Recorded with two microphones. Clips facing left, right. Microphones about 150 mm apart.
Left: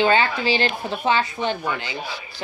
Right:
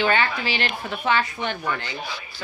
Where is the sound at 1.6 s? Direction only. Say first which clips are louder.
Left 1 dB; 15° left (ahead or behind).